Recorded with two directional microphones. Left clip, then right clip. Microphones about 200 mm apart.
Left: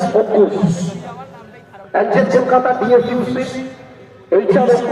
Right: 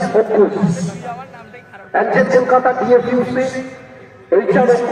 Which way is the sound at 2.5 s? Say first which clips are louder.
Left 1 dB; 10° right (ahead or behind).